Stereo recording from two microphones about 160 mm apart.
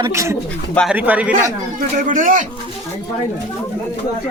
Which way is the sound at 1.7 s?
55° right (ahead or behind).